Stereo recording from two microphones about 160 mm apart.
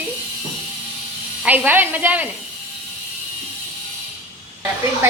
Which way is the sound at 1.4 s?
10° right (ahead or behind).